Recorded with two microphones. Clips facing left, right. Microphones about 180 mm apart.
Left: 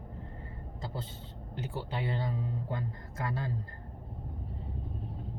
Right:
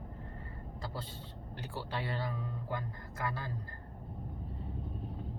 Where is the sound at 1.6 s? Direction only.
20° left (ahead or behind).